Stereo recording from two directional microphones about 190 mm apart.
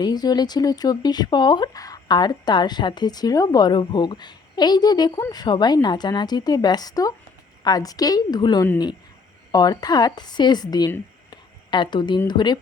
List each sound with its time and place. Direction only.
0.0 s a woman's voice: 20° left (ahead or behind)